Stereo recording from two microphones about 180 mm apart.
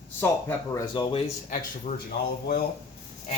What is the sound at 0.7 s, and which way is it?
Speech, 15° left (ahead or behind).